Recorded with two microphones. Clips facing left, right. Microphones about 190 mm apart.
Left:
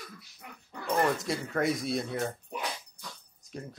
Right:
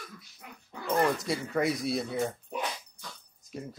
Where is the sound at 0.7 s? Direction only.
Centre (ahead or behind).